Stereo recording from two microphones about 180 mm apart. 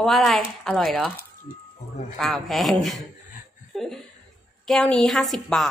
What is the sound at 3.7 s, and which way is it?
Laughter, centre (ahead or behind).